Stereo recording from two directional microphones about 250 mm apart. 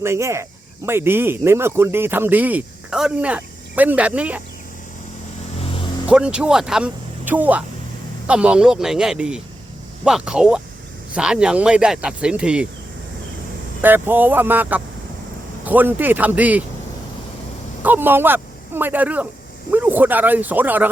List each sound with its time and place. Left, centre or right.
0.0 s speech: centre
5.5 s vehicle: left
6.1 s speech: centre
13.8 s speech: centre
17.8 s speech: centre